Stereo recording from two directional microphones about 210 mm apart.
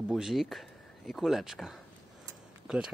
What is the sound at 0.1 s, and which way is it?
Speech, centre (ahead or behind).